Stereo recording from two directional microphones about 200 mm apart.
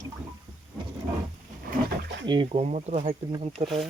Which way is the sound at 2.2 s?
25° right (ahead or behind).